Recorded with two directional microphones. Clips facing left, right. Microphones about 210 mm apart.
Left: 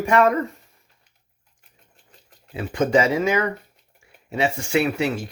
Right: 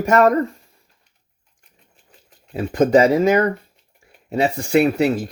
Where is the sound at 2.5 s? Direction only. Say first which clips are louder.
Right 5 dB; 40° right (ahead or behind).